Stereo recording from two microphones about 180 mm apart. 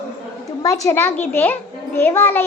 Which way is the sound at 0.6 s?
15° left (ahead or behind).